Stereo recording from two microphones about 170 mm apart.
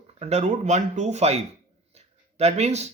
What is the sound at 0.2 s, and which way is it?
Speech, 40° right (ahead or behind).